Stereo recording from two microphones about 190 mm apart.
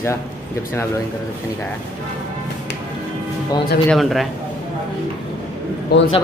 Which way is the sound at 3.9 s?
Centre (ahead or behind).